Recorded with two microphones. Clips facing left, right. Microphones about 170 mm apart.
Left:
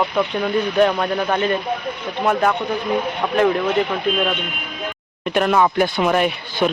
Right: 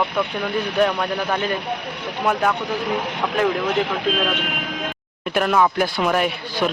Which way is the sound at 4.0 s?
90° right.